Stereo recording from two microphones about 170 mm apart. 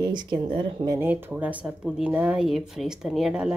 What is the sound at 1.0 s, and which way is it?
Speech, 15° right (ahead or behind).